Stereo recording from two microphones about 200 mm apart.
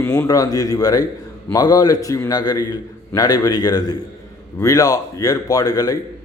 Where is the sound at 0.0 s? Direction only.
15° left (ahead or behind).